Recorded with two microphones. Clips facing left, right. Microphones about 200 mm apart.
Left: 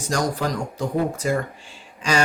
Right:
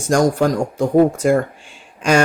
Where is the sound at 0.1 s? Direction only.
50° right (ahead or behind).